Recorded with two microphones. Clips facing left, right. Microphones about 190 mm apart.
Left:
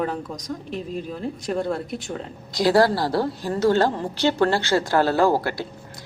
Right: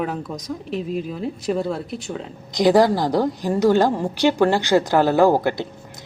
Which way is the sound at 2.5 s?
20° right (ahead or behind).